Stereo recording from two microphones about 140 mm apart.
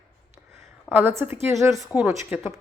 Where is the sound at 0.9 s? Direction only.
15° right (ahead or behind).